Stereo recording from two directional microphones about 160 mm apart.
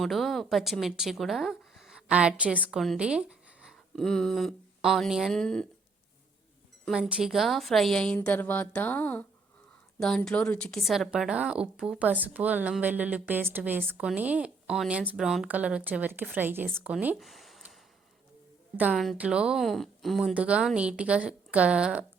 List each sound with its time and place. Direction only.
0.0 s speech: centre (ahead or behind)
6.8 s speech: centre (ahead or behind)
16.8 s a sound: 10° right (ahead or behind)
18.8 s speech: 5° right (ahead or behind)